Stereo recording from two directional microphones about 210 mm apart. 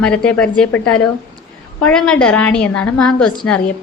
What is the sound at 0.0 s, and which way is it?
A woman's voice, 5° left (ahead or behind).